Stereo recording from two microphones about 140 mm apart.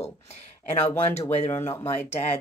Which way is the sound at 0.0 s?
50° left (ahead or behind).